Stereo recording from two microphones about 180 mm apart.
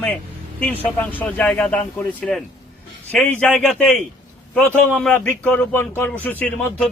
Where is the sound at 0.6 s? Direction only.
10° left (ahead or behind).